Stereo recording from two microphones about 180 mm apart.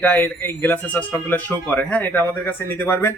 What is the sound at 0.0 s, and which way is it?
Speech, 10° left (ahead or behind).